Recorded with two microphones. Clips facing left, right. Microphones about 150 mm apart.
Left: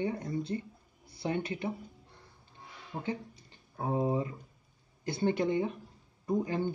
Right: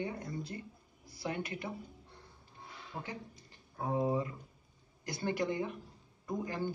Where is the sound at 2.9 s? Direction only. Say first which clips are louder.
Left 4 dB; 15° left (ahead or behind).